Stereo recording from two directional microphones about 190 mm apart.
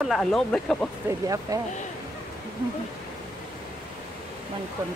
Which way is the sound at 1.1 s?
20° right (ahead or behind).